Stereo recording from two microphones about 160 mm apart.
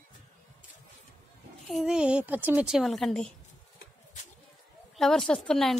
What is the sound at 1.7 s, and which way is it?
A woman's voice, centre (ahead or behind).